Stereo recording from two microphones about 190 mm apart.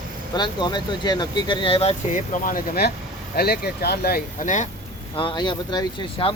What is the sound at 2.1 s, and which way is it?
Speech, 45° left (ahead or behind).